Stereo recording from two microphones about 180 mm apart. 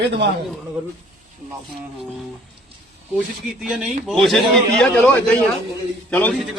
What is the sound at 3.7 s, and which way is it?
A man's voice, 5° right (ahead or behind).